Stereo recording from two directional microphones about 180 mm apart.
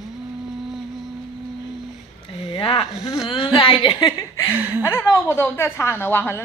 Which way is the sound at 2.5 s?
30° left (ahead or behind).